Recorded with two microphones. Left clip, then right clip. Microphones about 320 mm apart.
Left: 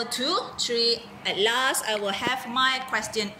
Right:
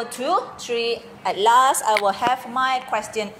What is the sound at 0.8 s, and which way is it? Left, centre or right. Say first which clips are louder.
Speech: right 2 dB; centre.